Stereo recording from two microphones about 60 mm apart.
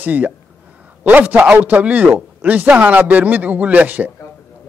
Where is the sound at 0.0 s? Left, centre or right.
Right.